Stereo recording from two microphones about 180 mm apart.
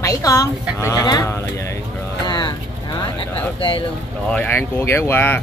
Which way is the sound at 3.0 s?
30° left (ahead or behind).